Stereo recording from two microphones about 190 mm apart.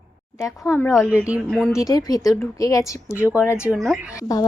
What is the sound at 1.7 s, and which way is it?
A woman's voice, 20° left (ahead or behind).